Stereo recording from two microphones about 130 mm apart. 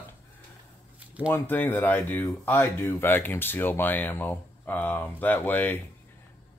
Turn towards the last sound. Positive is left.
turn(degrees=15)  # may be behind; listen again after turning